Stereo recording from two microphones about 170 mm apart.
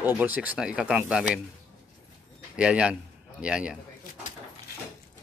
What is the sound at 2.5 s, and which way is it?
A man's voice, 5° right (ahead or behind).